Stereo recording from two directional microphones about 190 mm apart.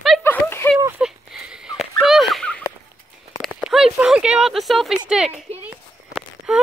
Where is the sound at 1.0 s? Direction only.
5° right (ahead or behind).